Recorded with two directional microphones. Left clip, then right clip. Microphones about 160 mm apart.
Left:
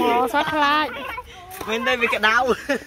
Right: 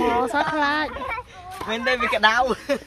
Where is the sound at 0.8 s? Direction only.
25° left (ahead or behind).